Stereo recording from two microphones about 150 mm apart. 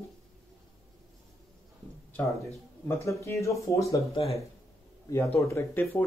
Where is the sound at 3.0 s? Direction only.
20° left (ahead or behind).